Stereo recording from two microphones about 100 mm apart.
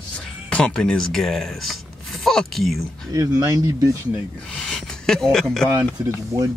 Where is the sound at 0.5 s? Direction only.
10° left (ahead or behind).